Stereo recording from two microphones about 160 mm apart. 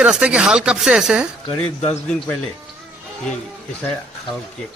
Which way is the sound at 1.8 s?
10° left (ahead or behind).